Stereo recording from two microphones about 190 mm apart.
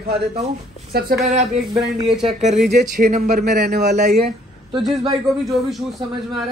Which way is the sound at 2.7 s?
45° right (ahead or behind).